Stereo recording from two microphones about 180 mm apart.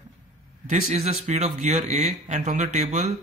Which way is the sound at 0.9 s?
35° right (ahead or behind).